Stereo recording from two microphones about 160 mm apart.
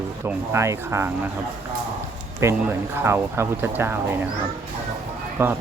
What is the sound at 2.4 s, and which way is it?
Speech, 15° right (ahead or behind).